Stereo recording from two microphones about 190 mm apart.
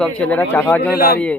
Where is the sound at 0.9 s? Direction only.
50° left (ahead or behind).